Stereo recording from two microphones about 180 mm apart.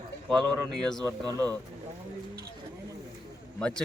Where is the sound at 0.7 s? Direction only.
5° left (ahead or behind).